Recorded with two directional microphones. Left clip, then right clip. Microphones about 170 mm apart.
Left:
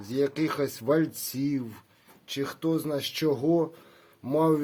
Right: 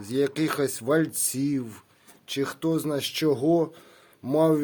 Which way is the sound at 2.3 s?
35° right (ahead or behind).